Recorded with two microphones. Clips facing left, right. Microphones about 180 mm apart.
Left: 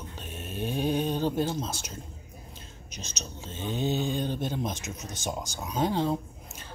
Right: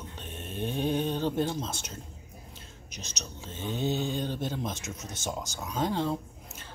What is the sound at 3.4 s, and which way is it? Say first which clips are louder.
Speech: left 1 dB; 15° left (ahead or behind).